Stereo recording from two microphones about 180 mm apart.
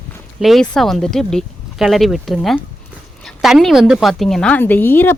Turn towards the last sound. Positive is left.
turn(degrees=10)  # may be behind; listen again after turning